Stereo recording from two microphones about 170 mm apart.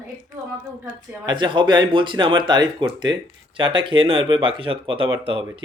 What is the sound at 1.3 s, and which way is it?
Speech, 25° right (ahead or behind).